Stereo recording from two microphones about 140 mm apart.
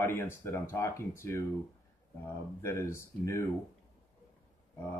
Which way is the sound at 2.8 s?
20° left (ahead or behind).